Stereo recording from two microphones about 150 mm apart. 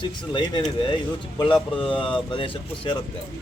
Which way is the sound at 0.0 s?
30° left (ahead or behind).